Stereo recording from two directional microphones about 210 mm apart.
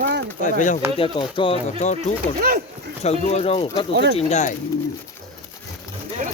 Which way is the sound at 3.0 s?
30° left (ahead or behind).